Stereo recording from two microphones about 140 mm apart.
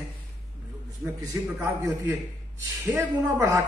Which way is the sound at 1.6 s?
25° right (ahead or behind).